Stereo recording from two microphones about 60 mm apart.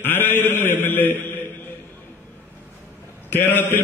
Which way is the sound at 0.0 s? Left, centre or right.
Left.